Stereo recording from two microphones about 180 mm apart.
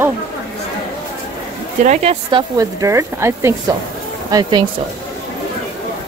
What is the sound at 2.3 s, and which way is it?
Speech, 20° right (ahead or behind).